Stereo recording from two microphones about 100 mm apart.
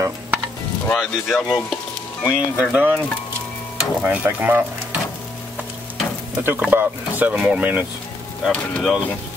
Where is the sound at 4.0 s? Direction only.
20° right (ahead or behind).